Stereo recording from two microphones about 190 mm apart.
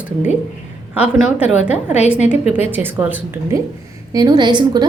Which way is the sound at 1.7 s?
35° left (ahead or behind).